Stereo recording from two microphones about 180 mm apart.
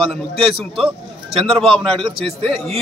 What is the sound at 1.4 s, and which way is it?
A man's voice, 30° right (ahead or behind).